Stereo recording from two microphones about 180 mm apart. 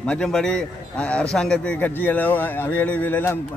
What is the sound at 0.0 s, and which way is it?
A man's voice, 5° left (ahead or behind).